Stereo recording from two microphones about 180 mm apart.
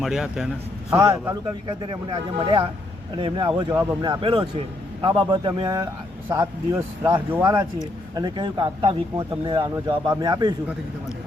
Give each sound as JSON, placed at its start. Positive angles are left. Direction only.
{"t": 0.0, "sound": "a man's voice", "side_deg": 0}
{"t": 0.9, "sound": "speech", "side_deg": -15}